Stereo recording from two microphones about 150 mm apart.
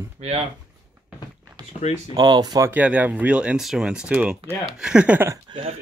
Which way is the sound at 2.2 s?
25° right (ahead or behind).